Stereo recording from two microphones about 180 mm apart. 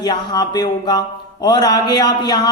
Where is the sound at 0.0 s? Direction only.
25° left (ahead or behind).